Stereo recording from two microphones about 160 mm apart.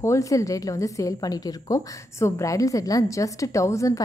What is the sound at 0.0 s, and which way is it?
A woman's voice, 20° left (ahead or behind).